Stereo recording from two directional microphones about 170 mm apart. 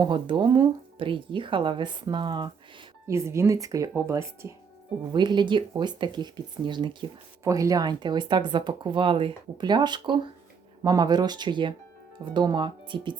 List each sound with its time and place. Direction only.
0.0 s speech: 30° right (ahead or behind)
3.1 s speech: 15° right (ahead or behind)